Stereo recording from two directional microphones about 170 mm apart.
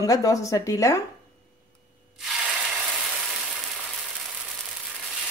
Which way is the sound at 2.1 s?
5° right (ahead or behind).